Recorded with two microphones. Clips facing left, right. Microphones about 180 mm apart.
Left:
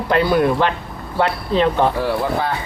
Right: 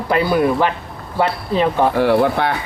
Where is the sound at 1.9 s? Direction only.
70° right (ahead or behind).